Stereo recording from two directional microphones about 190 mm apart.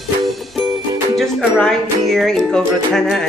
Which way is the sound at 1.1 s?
Centre (ahead or behind).